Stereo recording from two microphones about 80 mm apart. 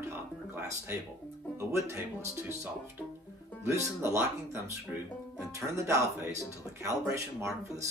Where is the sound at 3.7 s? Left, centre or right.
Right.